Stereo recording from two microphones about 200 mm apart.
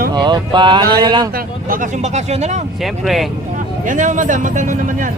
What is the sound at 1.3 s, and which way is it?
A man's voice, 40° right (ahead or behind).